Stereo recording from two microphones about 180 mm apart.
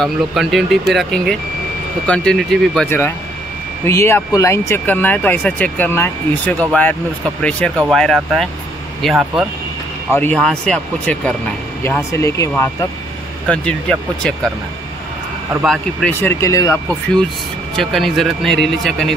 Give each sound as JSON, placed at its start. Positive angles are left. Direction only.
{"t": 0.0, "sound": "speech", "side_deg": 0}
{"t": 10.1, "sound": "speech", "side_deg": 10}
{"t": 11.8, "sound": "speech", "side_deg": 15}
{"t": 13.5, "sound": "speech", "side_deg": 5}
{"t": 15.5, "sound": "speech", "side_deg": 0}
{"t": 16.1, "sound": "speech", "side_deg": 10}
{"t": 17.7, "sound": "speech", "side_deg": 0}